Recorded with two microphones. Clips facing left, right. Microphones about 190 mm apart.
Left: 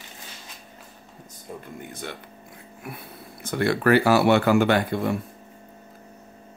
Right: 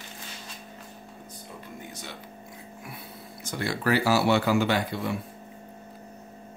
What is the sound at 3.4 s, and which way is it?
Speech, 60° left (ahead or behind).